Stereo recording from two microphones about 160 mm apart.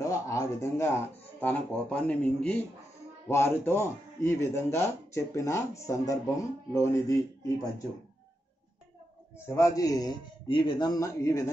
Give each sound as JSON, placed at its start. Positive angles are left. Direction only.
{"t": 0.0, "sound": "speech", "side_deg": 20}
{"t": 9.5, "sound": "speech", "side_deg": 20}